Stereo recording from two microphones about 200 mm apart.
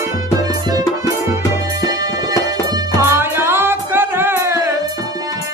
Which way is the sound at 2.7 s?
15° right (ahead or behind).